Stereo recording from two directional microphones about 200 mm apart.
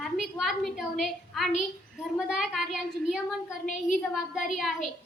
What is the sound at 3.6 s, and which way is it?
Speech, 40° left (ahead or behind).